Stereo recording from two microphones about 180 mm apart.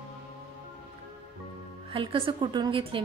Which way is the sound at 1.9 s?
30° right (ahead or behind).